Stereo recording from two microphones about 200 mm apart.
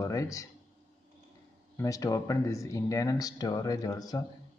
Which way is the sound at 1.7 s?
15° left (ahead or behind).